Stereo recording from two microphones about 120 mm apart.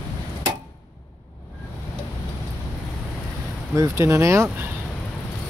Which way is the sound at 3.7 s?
25° right (ahead or behind).